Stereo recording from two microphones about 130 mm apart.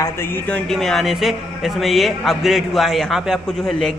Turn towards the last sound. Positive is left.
turn(degrees=5)  # may be behind; listen again after turning